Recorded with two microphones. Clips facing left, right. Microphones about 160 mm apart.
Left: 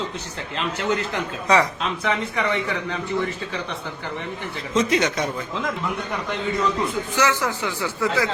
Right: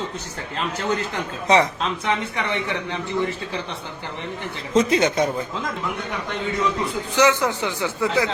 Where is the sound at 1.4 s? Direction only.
20° right (ahead or behind).